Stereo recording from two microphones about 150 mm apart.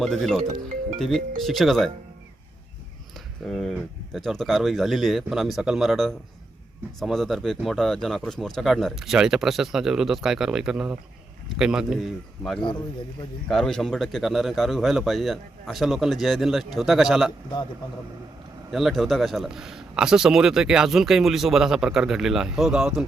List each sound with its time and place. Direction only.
0.0 s a man's voice: centre (ahead or behind)
3.4 s a man's voice: centre (ahead or behind)
18.7 s a man's voice: centre (ahead or behind)